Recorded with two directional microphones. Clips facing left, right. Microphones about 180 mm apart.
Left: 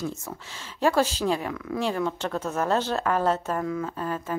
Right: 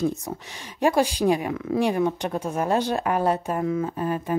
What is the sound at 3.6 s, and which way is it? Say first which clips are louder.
Speech: right 4 dB; 25° right (ahead or behind).